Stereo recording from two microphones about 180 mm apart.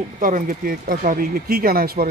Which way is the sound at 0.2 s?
50° right (ahead or behind).